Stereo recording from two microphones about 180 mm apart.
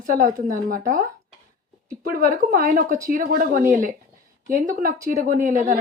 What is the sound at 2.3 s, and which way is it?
A woman's voice, 50° right (ahead or behind).